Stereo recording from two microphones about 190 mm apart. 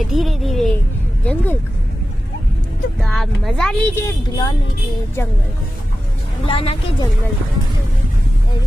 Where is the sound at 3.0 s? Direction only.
Centre (ahead or behind).